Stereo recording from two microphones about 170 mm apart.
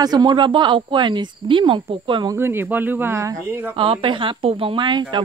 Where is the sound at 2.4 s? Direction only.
15° right (ahead or behind).